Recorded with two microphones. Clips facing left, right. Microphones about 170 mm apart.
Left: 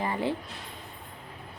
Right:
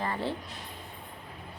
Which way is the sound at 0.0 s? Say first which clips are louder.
Left 3 dB; 15° left (ahead or behind).